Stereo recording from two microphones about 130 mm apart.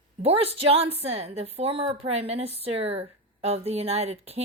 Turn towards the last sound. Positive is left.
turn(degrees=-55)  # may be behind; listen again after turning